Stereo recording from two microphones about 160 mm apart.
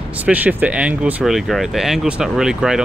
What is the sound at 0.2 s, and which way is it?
Speech, 10° right (ahead or behind).